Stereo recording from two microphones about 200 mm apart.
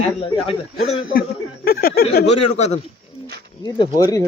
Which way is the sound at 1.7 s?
50° left (ahead or behind).